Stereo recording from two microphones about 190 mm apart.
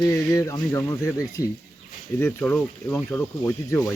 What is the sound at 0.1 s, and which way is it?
Speech, 15° left (ahead or behind).